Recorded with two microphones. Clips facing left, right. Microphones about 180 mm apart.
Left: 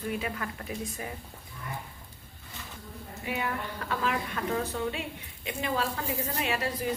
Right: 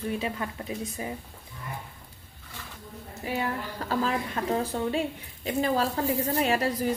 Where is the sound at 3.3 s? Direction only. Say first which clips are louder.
Right 3 dB; 30° right (ahead or behind).